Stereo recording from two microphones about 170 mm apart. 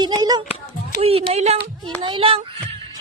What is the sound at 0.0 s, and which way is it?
Speech, 25° right (ahead or behind).